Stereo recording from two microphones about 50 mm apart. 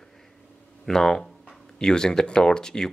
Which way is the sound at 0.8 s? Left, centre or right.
Centre.